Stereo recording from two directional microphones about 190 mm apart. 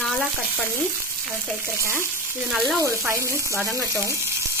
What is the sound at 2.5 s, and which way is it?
Speech, centre (ahead or behind).